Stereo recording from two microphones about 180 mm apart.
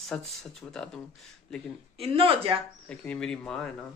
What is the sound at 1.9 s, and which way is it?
Speech, 30° right (ahead or behind).